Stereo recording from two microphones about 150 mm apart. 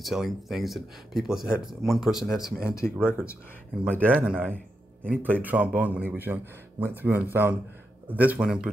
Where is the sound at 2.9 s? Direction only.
10° right (ahead or behind).